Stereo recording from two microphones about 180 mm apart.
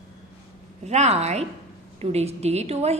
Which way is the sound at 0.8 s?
35° right (ahead or behind).